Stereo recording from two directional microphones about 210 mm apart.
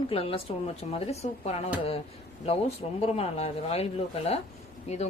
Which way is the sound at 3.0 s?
30° left (ahead or behind).